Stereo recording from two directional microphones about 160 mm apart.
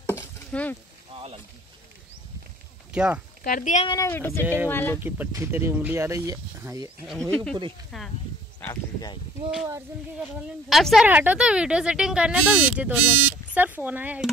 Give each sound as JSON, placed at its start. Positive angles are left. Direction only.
{"t": 0.0, "sound": "a sound", "side_deg": 10}
{"t": 1.1, "sound": "boat", "side_deg": -35}
{"t": 2.9, "sound": "speech", "side_deg": -5}
{"t": 3.4, "sound": "speech", "side_deg": 55}
{"t": 3.8, "sound": "speech", "side_deg": 25}
{"t": 4.1, "sound": "speech", "side_deg": 15}
{"t": 5.0, "sound": "speech", "side_deg": -10}
{"t": 7.1, "sound": "speech", "side_deg": 5}
{"t": 10.7, "sound": "speech", "side_deg": 0}